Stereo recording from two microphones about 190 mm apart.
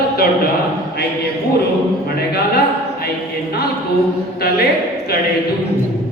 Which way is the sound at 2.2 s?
55° left (ahead or behind).